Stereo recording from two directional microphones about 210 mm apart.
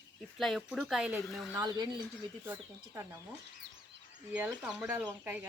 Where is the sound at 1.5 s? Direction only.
20° right (ahead or behind).